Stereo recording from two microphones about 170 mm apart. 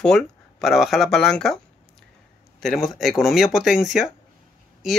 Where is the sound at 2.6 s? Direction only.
Centre (ahead or behind).